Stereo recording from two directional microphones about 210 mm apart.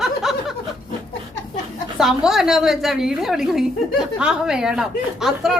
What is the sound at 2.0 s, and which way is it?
A woman's voice, centre (ahead or behind).